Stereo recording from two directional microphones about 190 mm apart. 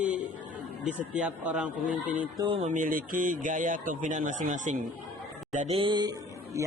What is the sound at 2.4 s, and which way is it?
Speech, 30° right (ahead or behind).